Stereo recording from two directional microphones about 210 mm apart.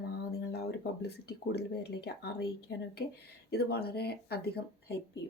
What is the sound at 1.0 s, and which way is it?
A woman's voice, 50° left (ahead or behind).